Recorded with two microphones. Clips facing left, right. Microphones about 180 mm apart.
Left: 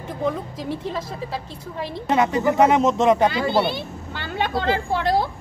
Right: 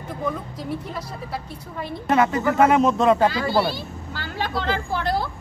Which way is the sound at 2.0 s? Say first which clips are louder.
Even; 20° left (ahead or behind).